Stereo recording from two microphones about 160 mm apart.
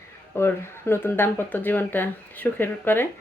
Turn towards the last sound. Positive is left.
turn(degrees=15)  # may be behind; listen again after turning